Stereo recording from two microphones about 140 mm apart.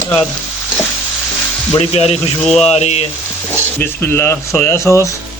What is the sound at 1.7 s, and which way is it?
Speech, 50° left (ahead or behind).